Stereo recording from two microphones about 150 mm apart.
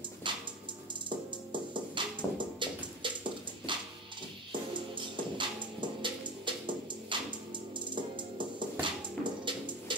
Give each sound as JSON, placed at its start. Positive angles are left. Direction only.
{"t": 0.2, "sound": "dog", "side_deg": -35}
{"t": 1.0, "sound": "music", "side_deg": -30}